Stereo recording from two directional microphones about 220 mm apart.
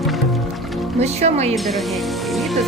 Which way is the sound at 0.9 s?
30° right (ahead or behind).